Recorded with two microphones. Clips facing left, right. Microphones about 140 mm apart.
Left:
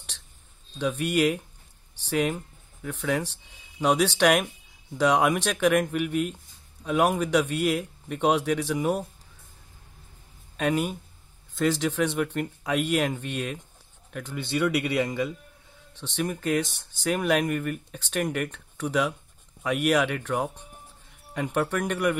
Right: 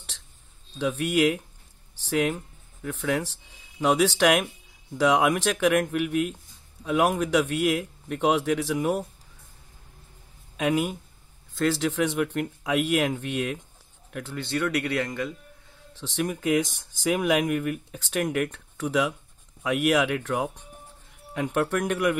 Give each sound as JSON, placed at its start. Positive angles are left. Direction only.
{"t": 0.7, "sound": "a man's voice", "side_deg": -5}
{"t": 10.6, "sound": "a man's voice", "side_deg": -5}
{"t": 16.0, "sound": "a man's voice", "side_deg": -5}